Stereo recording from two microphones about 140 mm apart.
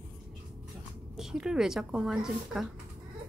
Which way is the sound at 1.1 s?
5° right (ahead or behind).